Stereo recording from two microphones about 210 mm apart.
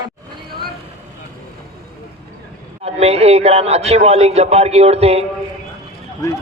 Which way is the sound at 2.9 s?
30° right (ahead or behind).